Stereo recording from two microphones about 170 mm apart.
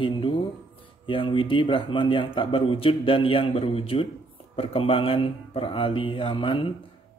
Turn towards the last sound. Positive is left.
turn(degrees=30)  # may be behind; listen again after turning